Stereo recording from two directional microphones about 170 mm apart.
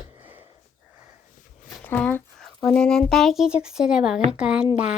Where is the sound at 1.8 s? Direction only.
10° left (ahead or behind).